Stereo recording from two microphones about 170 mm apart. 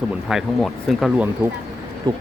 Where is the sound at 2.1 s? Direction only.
30° right (ahead or behind).